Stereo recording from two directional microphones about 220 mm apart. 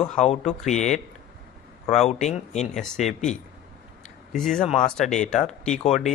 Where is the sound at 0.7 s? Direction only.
30° left (ahead or behind).